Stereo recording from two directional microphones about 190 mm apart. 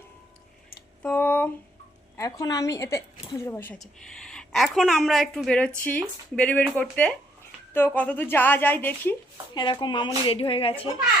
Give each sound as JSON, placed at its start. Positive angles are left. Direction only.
{"t": 1.0, "sound": "a sound", "side_deg": 10}
{"t": 2.1, "sound": "a woman's voice", "side_deg": 20}
{"t": 9.6, "sound": "speech", "side_deg": 25}